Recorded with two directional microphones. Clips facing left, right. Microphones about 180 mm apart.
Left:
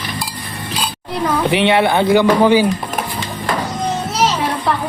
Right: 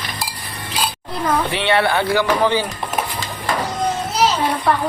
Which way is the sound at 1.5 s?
15° left (ahead or behind).